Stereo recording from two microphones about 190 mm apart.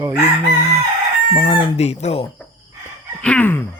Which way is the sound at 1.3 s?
25° left (ahead or behind).